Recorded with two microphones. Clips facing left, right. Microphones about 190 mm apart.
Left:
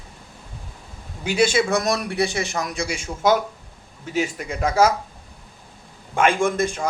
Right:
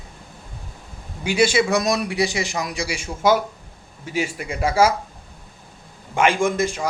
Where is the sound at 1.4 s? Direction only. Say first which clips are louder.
Right 1 dB; 50° left (ahead or behind).